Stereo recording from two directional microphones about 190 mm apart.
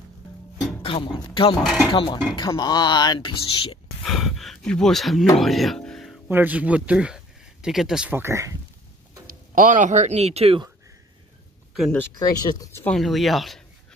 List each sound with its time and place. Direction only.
0.8 s speech: 30° left (ahead or behind)
1.6 s speech: centre (ahead or behind)
1.9 s speech: 25° left (ahead or behind)
4.0 s speech: centre (ahead or behind)
5.4 s music: centre (ahead or behind)
6.2 s speech: 10° right (ahead or behind)
9.6 s speech: 40° right (ahead or behind)
11.7 s speech: centre (ahead or behind)
12.0 s speech: 20° left (ahead or behind)
12.9 s speech: centre (ahead or behind)